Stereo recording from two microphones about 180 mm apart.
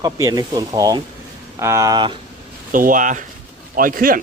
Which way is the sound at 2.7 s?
50° right (ahead or behind).